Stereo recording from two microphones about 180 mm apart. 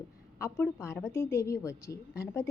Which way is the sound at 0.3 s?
15° left (ahead or behind).